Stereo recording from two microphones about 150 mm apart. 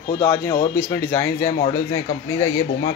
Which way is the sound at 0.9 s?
15° left (ahead or behind).